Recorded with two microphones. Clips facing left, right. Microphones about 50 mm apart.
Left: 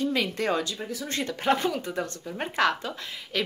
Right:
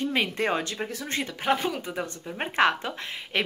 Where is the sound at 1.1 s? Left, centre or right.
Centre; by 3.4 s right.